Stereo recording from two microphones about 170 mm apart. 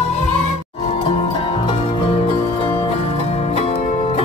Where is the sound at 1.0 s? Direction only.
30° left (ahead or behind).